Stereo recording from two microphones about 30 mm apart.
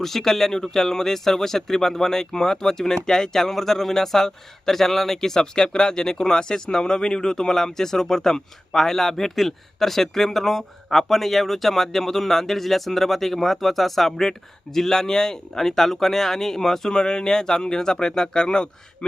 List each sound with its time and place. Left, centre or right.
0.0 s speech: centre
16.9 s speech: left